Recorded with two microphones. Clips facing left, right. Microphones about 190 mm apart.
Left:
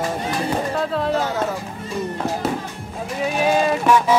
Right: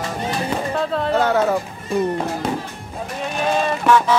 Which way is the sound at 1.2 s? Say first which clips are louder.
Right 5 dB; 65° right (ahead or behind).